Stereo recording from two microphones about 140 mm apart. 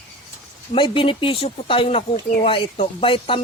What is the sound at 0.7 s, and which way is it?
Speech, 40° left (ahead or behind).